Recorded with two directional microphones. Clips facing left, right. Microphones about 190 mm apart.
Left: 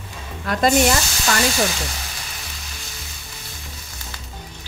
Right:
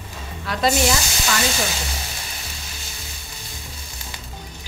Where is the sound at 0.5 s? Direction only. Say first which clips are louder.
Left 4 dB; 50° left (ahead or behind).